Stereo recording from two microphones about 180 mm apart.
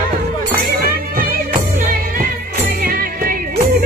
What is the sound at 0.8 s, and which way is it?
Music, 55° right (ahead or behind).